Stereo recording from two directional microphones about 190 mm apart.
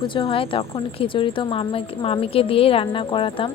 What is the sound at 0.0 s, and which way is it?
A woman's voice, 25° left (ahead or behind).